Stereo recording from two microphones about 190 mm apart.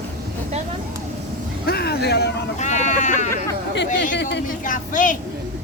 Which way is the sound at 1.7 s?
60° left (ahead or behind).